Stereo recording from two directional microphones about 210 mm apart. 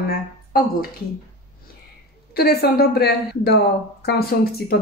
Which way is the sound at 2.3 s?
45° left (ahead or behind).